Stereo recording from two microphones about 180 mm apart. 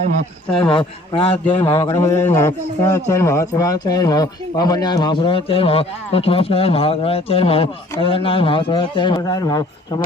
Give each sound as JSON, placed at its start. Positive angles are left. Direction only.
{"t": 0.5, "sound": "a man's voice", "side_deg": 25}
{"t": 2.0, "sound": "a man's voice", "side_deg": 15}